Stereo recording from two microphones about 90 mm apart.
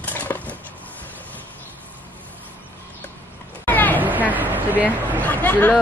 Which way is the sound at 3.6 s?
20° left (ahead or behind).